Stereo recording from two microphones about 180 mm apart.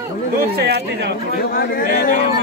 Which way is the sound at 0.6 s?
70° right (ahead or behind).